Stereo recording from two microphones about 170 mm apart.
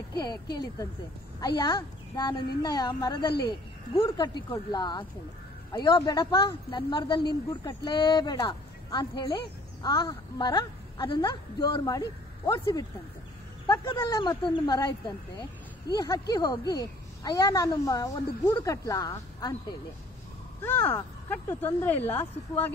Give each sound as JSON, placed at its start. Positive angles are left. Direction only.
{"t": 0.2, "sound": "speech", "side_deg": 25}
{"t": 15.9, "sound": "speech", "side_deg": 25}
{"t": 20.6, "sound": "speech", "side_deg": 10}